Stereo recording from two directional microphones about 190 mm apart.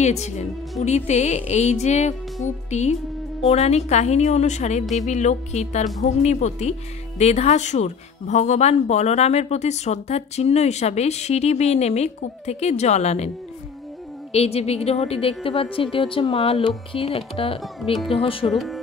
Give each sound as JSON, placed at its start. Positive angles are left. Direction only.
{"t": 0.0, "sound": "speech", "side_deg": 35}
{"t": 14.3, "sound": "speech", "side_deg": 35}
{"t": 18.5, "sound": "speech", "side_deg": 0}